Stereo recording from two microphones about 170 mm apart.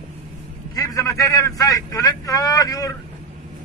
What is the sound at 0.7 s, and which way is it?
A man's voice, 20° left (ahead or behind).